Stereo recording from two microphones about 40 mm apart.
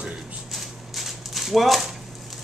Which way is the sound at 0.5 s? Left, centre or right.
Centre.